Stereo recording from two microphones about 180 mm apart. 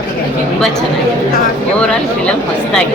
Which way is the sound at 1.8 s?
5° left (ahead or behind).